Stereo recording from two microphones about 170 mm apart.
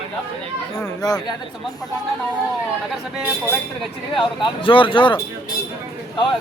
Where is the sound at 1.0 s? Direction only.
20° left (ahead or behind).